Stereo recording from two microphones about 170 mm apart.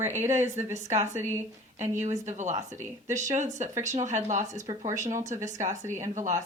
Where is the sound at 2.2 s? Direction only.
45° right (ahead or behind).